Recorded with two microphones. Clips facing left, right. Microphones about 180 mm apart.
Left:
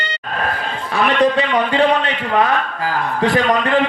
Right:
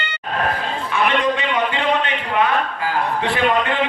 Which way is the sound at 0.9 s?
35° left (ahead or behind).